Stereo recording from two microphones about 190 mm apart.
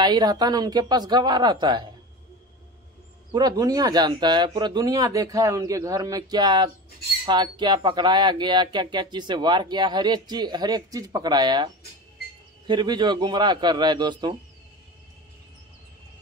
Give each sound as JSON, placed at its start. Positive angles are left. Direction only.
{"t": 0.0, "sound": "speech", "side_deg": -20}
{"t": 3.3, "sound": "speech", "side_deg": -20}